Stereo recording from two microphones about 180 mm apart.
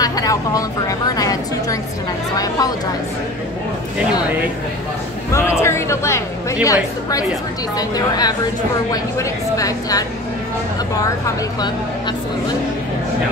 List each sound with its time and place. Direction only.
0.0 s a woman's voice: 20° left (ahead or behind)
5.3 s a woman's voice: 15° left (ahead or behind)